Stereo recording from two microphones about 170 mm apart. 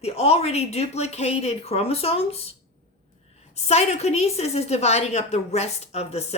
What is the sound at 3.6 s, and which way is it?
Speech, 40° left (ahead or behind).